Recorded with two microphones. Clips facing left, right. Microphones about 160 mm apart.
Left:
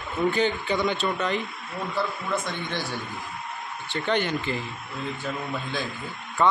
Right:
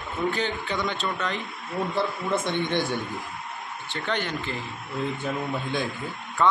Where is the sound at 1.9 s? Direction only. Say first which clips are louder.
Even; 25° right (ahead or behind).